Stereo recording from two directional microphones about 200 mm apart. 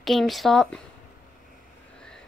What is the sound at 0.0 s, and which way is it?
Speech, centre (ahead or behind).